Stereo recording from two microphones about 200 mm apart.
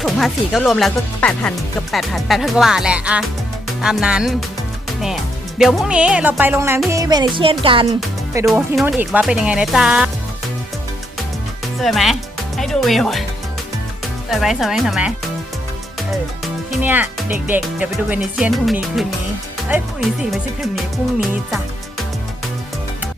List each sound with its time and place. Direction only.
0.0 s speech: centre (ahead or behind)
6.9 s music: 20° right (ahead or behind)
8.7 s speech: centre (ahead or behind)
11.8 s speech: centre (ahead or behind)
14.3 s speech: centre (ahead or behind)
16.8 s speech: 10° right (ahead or behind)